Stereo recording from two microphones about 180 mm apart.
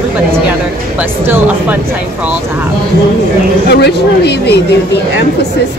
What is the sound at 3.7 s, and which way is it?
Speech, 65° left (ahead or behind).